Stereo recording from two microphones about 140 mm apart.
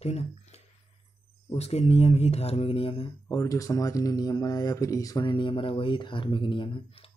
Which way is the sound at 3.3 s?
25° left (ahead or behind).